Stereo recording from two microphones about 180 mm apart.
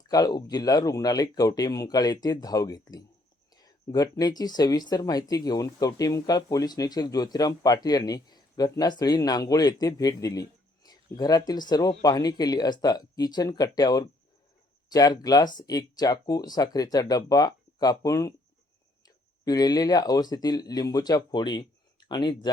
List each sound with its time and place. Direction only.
0.1 s speech: 20° left (ahead or behind)